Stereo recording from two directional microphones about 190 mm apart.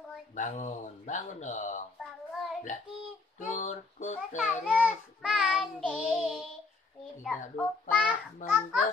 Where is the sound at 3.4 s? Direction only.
40° left (ahead or behind).